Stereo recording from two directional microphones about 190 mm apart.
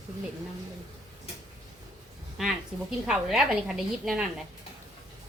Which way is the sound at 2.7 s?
Centre (ahead or behind).